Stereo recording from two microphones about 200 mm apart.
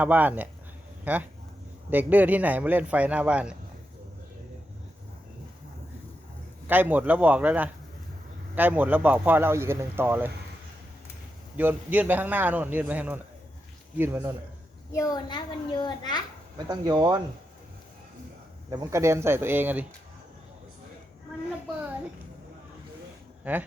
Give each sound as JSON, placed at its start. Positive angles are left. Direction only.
{"t": 0.0, "sound": "speech", "side_deg": -10}
{"t": 6.7, "sound": "speech", "side_deg": -10}
{"t": 11.5, "sound": "speech", "side_deg": -10}
{"t": 14.9, "sound": "a child's voice", "side_deg": 20}
{"t": 16.6, "sound": "speech", "side_deg": -20}
{"t": 18.7, "sound": "speech", "side_deg": -15}
{"t": 23.4, "sound": "speech", "side_deg": -10}